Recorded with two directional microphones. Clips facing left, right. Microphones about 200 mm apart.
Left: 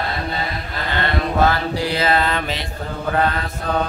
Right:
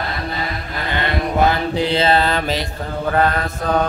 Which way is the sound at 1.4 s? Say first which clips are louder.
Right 2 dB; 20° right (ahead or behind).